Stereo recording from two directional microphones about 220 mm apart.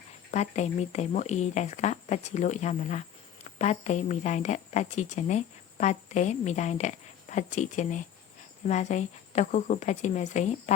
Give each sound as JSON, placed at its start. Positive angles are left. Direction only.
{"t": 0.3, "sound": "speech", "side_deg": 30}